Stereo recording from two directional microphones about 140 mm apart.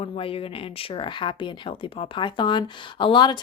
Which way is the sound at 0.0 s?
40° left (ahead or behind).